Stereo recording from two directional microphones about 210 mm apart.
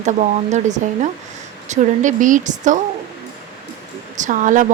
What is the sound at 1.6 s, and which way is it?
A woman's voice, 35° right (ahead or behind).